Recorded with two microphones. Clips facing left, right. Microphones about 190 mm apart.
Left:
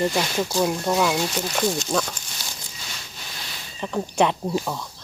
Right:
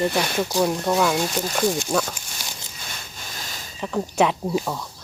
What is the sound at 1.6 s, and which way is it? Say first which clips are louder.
Speech: right 2 dB; 10° right (ahead or behind).